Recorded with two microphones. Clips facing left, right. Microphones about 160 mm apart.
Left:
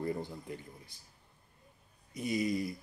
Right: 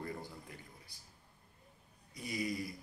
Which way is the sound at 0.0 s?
25° left (ahead or behind).